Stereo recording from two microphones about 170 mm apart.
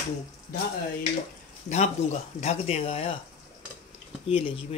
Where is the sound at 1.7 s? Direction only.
40° left (ahead or behind).